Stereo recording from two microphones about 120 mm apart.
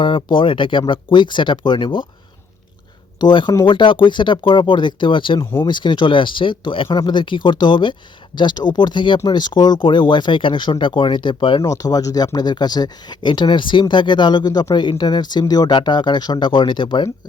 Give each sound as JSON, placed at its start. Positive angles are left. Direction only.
{"t": 0.0, "sound": "speech", "side_deg": 40}
{"t": 3.2, "sound": "speech", "side_deg": 40}
{"t": 11.6, "sound": "speech", "side_deg": 30}